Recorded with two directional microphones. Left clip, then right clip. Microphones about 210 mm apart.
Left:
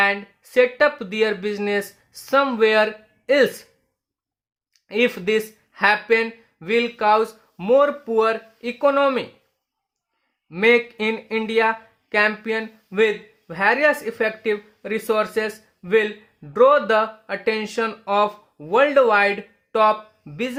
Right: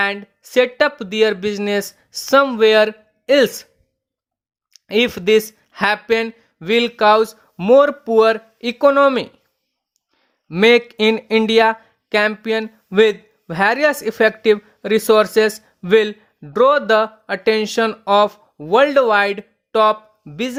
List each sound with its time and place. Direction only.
0.0 s speech: 35° right (ahead or behind)
4.7 s speech: 40° right (ahead or behind)
10.5 s speech: 40° right (ahead or behind)